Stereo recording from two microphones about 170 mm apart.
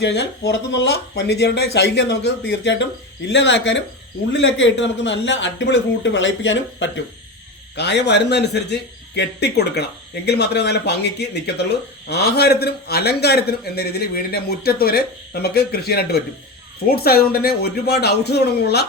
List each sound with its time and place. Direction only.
0.0 s a man's voice: 75° left (ahead or behind)